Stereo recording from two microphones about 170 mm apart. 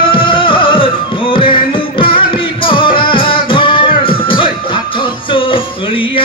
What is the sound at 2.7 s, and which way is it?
Music, 30° left (ahead or behind).